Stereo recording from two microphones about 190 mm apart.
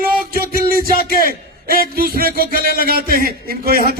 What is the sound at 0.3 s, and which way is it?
Music, 50° right (ahead or behind).